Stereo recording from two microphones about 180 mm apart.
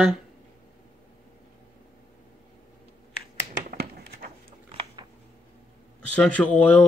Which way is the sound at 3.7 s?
55° right (ahead or behind).